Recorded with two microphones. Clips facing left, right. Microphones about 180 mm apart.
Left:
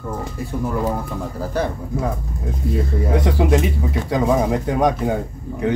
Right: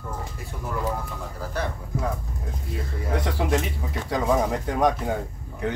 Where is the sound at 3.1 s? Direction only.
15° left (ahead or behind).